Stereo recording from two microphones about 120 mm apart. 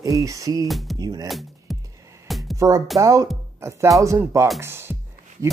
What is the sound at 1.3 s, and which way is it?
Music, centre (ahead or behind).